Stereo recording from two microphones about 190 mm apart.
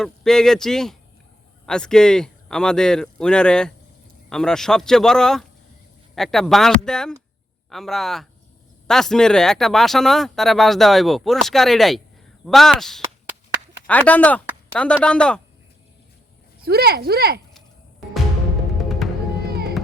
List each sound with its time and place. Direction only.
0.0 s speech: centre (ahead or behind)
16.6 s speech: 55° right (ahead or behind)
18.8 s music: centre (ahead or behind)
19.5 s fireworks: 55° right (ahead or behind)